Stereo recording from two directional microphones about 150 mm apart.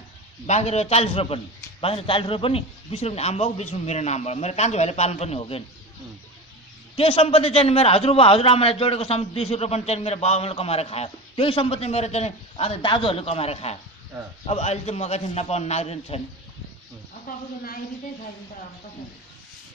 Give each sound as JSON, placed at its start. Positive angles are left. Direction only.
{"t": 0.5, "sound": "a man's voice", "side_deg": 45}
{"t": 7.0, "sound": "a man's voice", "side_deg": 40}